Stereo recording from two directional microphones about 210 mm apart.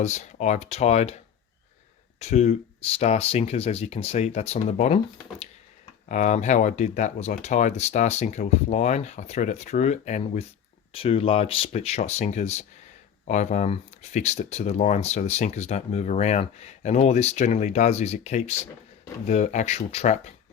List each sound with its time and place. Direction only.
0.0 s speech: 35° left (ahead or behind)
6.1 s speech: 35° left (ahead or behind)